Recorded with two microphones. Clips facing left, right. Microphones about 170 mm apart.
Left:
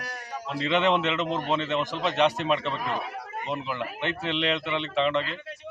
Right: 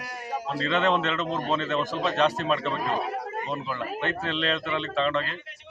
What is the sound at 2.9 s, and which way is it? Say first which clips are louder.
Speech: right 4 dB; 35° right (ahead or behind).